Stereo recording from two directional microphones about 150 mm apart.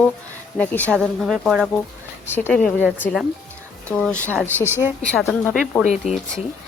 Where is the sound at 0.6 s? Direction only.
10° left (ahead or behind).